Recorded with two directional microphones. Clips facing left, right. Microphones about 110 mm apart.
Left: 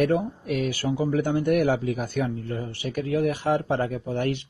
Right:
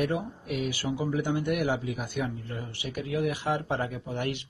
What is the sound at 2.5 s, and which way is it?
A man's voice, 35° left (ahead or behind).